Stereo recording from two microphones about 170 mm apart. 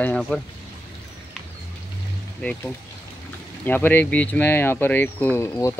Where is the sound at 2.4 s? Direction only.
5° left (ahead or behind).